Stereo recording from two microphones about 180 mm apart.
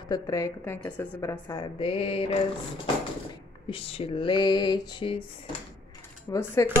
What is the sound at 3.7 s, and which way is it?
A woman's voice, 30° left (ahead or behind).